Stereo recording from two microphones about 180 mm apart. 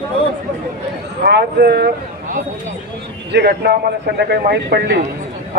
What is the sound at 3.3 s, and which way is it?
A man's voice, 65° right (ahead or behind).